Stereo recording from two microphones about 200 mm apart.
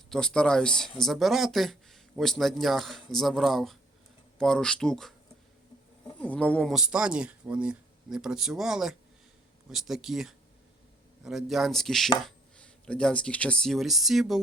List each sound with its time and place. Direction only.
0.1 s speech: 5° left (ahead or behind)
6.1 s speech: 5° left (ahead or behind)